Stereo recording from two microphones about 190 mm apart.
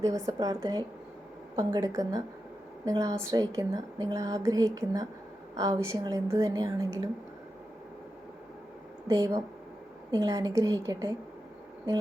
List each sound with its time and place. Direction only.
0.0 s speech: 15° right (ahead or behind)
9.0 s speech: 15° right (ahead or behind)